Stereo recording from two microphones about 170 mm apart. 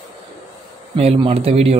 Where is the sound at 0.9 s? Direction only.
35° right (ahead or behind).